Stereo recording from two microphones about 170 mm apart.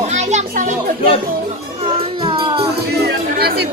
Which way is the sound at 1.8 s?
30° right (ahead or behind).